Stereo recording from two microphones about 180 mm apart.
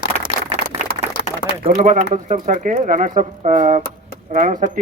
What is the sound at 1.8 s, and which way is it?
Speech, 45° right (ahead or behind).